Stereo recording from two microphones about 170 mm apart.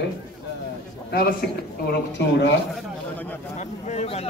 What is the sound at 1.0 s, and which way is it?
Speech, 65° left (ahead or behind).